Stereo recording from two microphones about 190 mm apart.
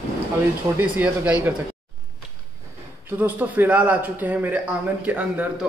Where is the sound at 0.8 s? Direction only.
5° right (ahead or behind).